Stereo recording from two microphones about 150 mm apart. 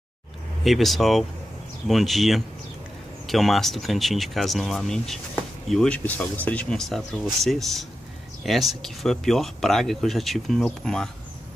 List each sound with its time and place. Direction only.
0.7 s speech: centre (ahead or behind)